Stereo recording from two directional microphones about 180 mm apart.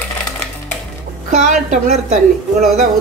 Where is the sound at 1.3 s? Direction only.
45° right (ahead or behind).